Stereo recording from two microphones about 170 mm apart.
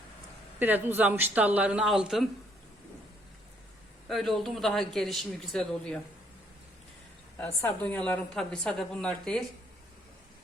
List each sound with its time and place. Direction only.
0.6 s speech: 10° right (ahead or behind)
4.1 s speech: centre (ahead or behind)
7.3 s a woman's voice: 10° left (ahead or behind)